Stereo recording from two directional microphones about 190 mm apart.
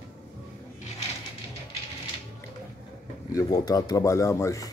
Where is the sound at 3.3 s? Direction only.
20° left (ahead or behind).